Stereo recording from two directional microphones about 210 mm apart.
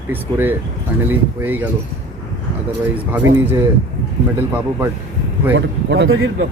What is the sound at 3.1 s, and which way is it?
Speech, 10° right (ahead or behind).